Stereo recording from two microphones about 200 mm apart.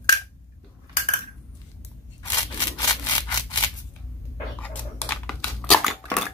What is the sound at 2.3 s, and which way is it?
Rub, 15° left (ahead or behind).